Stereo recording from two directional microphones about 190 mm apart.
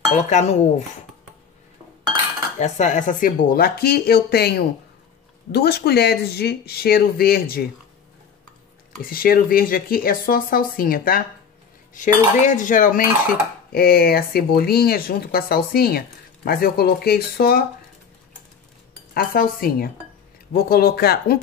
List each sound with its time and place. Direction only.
0.3 s speech: 40° left (ahead or behind)
2.6 s cutlery: 40° left (ahead or behind); by 4.6 s 55° left (ahead or behind)
5.5 s speech: 55° left (ahead or behind)
9.0 s cutlery: 50° left (ahead or behind)
19.1 s cutlery: 50° left (ahead or behind)